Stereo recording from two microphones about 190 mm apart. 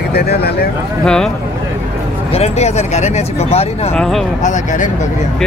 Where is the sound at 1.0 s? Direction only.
5° left (ahead or behind).